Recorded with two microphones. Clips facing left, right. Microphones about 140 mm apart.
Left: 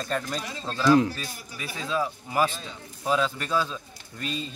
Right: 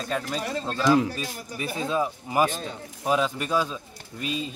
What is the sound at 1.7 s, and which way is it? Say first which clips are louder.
Speech: right 2 dB; 20° right (ahead or behind).